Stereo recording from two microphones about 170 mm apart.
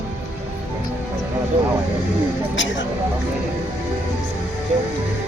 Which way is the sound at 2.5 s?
90° left.